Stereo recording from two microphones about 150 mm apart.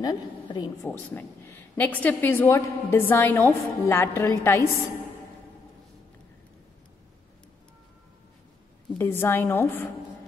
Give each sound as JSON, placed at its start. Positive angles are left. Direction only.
{"t": 0.0, "sound": "a woman's voice", "side_deg": 25}
{"t": 0.8, "sound": "a woman's voice", "side_deg": 15}
{"t": 8.9, "sound": "a woman's voice", "side_deg": 15}